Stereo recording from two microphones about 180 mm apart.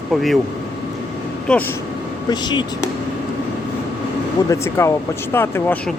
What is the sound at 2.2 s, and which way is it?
Speech, 25° left (ahead or behind).